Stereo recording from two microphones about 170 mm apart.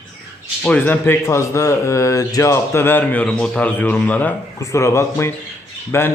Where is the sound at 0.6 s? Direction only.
10° left (ahead or behind).